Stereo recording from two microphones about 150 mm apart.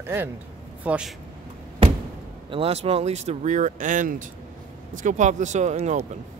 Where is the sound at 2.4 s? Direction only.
40° right (ahead or behind).